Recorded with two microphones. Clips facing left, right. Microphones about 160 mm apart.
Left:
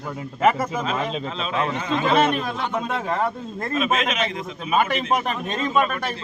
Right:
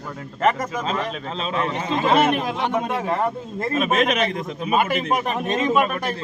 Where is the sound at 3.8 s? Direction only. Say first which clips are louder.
Right 3 dB; 40° right (ahead or behind).